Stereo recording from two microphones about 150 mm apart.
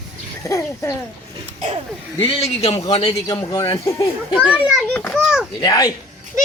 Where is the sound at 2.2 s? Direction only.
40° left (ahead or behind).